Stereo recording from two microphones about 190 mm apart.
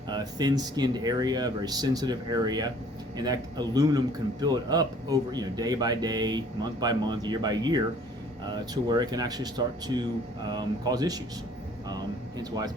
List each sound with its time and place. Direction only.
0.1 s a man's voice: 20° right (ahead or behind)
12.4 s a man's voice: 20° right (ahead or behind)